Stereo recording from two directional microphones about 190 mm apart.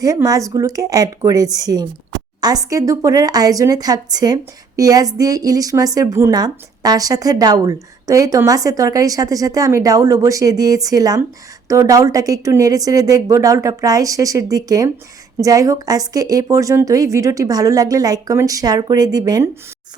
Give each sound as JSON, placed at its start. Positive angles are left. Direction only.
{"t": 0.0, "sound": "a woman's voice", "side_deg": -20}